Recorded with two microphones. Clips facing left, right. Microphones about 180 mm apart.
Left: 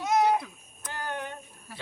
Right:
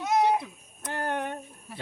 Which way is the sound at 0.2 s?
25° right (ahead or behind).